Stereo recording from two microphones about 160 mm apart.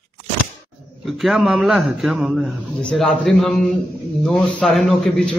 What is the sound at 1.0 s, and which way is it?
A man's voice, centre (ahead or behind).